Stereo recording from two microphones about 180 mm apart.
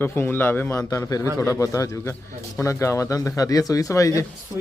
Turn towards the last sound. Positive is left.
turn(degrees=15)  # may be behind; listen again after turning